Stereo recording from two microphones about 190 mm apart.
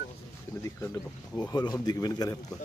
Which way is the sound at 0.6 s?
15° left (ahead or behind).